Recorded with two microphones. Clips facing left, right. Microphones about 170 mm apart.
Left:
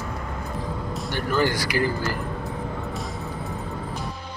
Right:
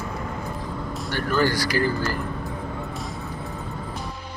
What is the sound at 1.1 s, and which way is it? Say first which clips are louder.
Speech: right 1 dB; 15° left (ahead or behind).